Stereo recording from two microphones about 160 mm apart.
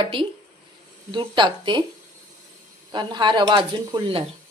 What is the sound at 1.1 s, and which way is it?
Speech, 30° right (ahead or behind).